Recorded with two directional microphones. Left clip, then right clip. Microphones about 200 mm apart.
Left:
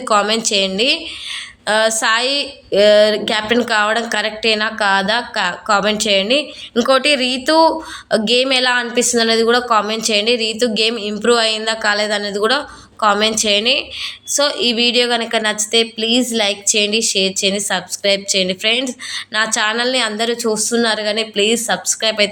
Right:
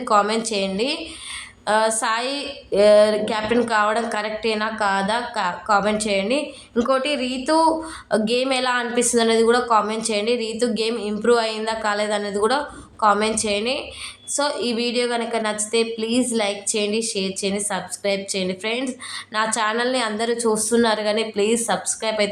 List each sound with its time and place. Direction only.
0.1 s a woman's voice: 10° left (ahead or behind)